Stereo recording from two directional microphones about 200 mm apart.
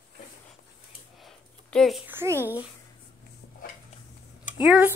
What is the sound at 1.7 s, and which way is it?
Child singing, centre (ahead or behind).